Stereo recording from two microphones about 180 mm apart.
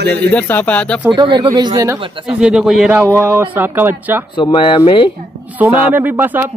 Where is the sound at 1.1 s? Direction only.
25° right (ahead or behind).